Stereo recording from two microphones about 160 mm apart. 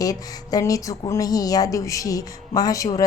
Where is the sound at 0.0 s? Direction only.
20° left (ahead or behind).